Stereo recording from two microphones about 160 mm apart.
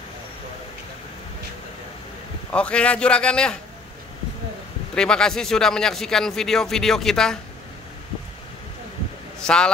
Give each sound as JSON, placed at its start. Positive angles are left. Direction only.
{"t": 2.5, "sound": "a man's voice", "side_deg": 5}
{"t": 4.9, "sound": "speech", "side_deg": 5}
{"t": 9.4, "sound": "a man's voice", "side_deg": 5}